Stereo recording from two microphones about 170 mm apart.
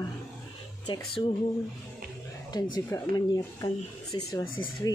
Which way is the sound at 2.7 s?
20° left (ahead or behind).